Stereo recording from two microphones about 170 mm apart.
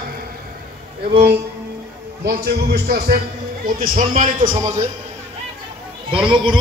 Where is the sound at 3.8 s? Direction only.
45° right (ahead or behind).